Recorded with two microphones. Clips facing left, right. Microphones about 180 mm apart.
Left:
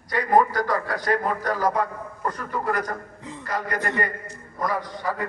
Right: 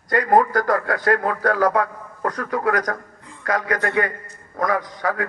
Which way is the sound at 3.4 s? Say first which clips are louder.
Right 5 dB; 90° right.